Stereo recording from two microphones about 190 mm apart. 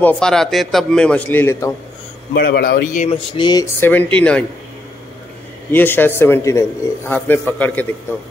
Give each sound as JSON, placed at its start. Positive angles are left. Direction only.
{"t": 0.0, "sound": "a man's voice", "side_deg": 5}
{"t": 2.3, "sound": "a man's voice", "side_deg": 55}
{"t": 3.1, "sound": "speech", "side_deg": 25}
{"t": 3.8, "sound": "a man's voice", "side_deg": 10}
{"t": 5.7, "sound": "a man's voice", "side_deg": 10}